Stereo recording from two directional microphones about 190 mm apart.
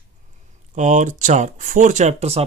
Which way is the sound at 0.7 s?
40° right (ahead or behind).